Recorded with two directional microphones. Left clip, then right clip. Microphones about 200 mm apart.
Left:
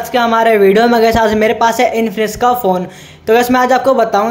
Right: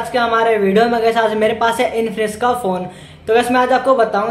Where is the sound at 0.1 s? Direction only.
35° left (ahead or behind).